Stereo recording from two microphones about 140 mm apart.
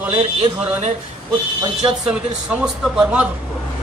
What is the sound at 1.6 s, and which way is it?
Speech, 35° right (ahead or behind).